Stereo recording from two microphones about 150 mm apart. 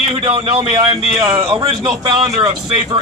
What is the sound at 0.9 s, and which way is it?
Speech, 20° right (ahead or behind).